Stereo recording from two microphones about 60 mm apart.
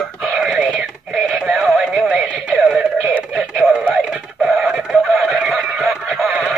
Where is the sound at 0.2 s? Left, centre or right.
Centre.